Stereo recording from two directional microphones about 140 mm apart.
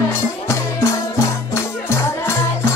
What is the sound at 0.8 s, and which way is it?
Music, 20° left (ahead or behind).